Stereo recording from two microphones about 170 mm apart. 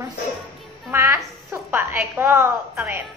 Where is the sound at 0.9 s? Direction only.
15° right (ahead or behind).